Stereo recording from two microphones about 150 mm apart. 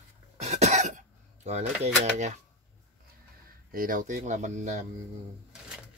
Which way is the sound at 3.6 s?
70° right (ahead or behind).